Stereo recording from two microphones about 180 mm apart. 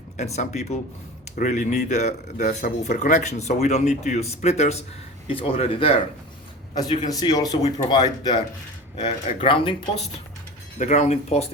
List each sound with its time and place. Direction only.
0.3 s speech: 40° left (ahead or behind)
7.1 s speech: 20° left (ahead or behind)
10.8 s speech: 40° left (ahead or behind)